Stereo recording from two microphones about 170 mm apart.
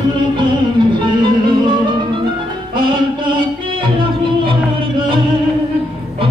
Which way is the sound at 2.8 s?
30° right (ahead or behind).